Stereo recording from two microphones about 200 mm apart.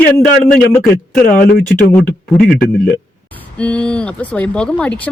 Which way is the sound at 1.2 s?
45° left (ahead or behind).